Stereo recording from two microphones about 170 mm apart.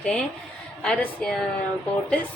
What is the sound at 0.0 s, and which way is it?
A woman's voice, 5° left (ahead or behind).